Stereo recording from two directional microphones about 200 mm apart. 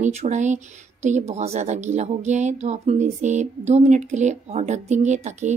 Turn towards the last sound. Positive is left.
turn(degrees=-35)  # may be behind; listen again after turning